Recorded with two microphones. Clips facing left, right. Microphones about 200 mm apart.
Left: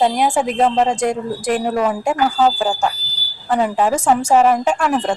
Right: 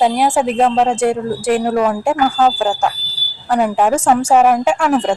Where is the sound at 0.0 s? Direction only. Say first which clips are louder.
Right 2 dB; 5° right (ahead or behind).